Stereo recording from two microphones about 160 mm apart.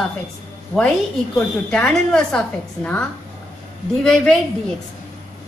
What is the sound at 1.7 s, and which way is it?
A woman's voice, 5° left (ahead or behind).